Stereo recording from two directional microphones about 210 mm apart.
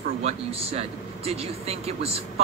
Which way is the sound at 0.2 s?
30° right (ahead or behind).